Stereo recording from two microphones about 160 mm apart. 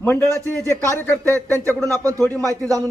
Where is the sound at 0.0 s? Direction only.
15° left (ahead or behind).